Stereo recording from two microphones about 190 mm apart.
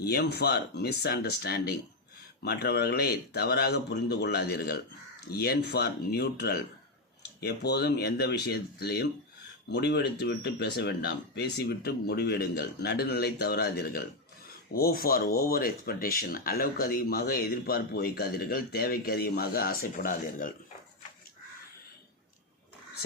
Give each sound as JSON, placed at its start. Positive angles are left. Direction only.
{"t": 0.0, "sound": "speech", "side_deg": 55}